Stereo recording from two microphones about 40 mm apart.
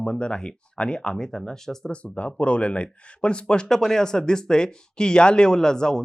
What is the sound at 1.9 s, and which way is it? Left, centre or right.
Speech, left.